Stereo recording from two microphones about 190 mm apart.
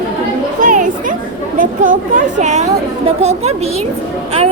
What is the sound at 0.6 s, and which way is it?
A woman's voice, 40° right (ahead or behind).